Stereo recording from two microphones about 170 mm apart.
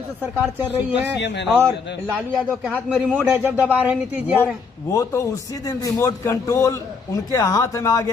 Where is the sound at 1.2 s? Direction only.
90° left.